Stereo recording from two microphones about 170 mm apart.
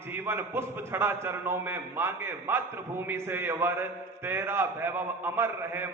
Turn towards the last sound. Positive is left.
turn(degrees=-15)  # may be behind; listen again after turning